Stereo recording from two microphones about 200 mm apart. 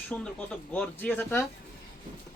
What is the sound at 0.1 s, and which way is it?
Speech, 5° left (ahead or behind).